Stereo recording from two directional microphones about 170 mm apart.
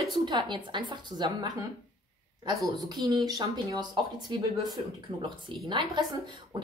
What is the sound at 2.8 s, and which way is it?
Speech, 25° right (ahead or behind).